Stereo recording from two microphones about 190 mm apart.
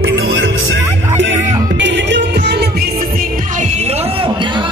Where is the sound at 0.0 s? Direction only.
70° right (ahead or behind).